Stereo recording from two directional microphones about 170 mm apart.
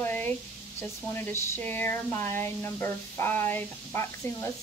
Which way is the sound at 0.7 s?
10° left (ahead or behind).